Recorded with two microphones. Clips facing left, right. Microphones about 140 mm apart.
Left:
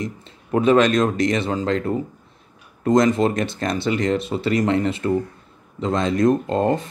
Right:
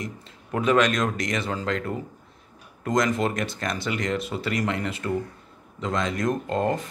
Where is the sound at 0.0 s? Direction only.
25° left (ahead or behind).